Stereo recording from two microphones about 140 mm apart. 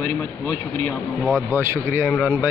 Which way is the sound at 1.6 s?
20° right (ahead or behind).